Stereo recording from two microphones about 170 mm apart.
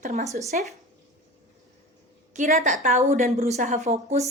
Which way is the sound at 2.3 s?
45° right (ahead or behind).